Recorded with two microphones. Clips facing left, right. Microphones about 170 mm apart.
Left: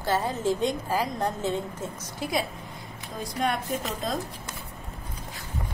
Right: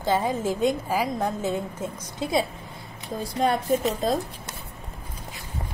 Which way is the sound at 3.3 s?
35° right (ahead or behind).